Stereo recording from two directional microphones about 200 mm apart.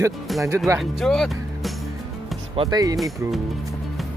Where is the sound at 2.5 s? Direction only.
25° right (ahead or behind).